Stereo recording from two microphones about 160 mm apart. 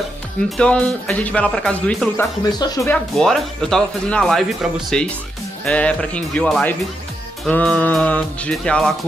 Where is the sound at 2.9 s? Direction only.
5° left (ahead or behind).